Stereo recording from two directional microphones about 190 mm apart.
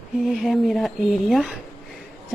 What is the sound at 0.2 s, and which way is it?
Speech, centre (ahead or behind).